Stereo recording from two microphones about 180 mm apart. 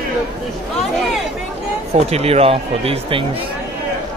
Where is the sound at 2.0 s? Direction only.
35° right (ahead or behind).